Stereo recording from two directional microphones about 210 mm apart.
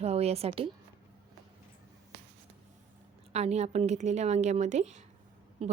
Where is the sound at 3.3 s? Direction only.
30° right (ahead or behind).